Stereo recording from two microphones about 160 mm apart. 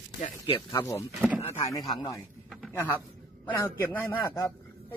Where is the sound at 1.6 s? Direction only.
25° left (ahead or behind).